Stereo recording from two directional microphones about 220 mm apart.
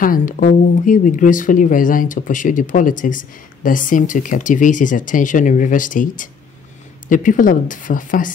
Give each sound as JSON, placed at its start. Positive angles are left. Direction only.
{"t": 0.0, "sound": "speech", "side_deg": 40}